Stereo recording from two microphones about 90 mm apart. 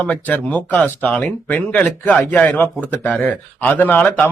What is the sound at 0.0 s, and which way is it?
Speech, 15° left (ahead or behind).